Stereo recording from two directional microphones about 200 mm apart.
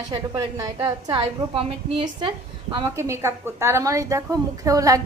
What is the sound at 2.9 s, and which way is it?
A woman's voice, 15° right (ahead or behind).